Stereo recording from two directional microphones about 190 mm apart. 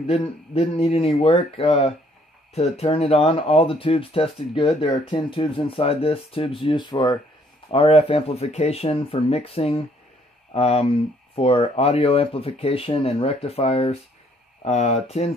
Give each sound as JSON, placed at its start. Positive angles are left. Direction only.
{"t": 0.0, "sound": "speech", "side_deg": 30}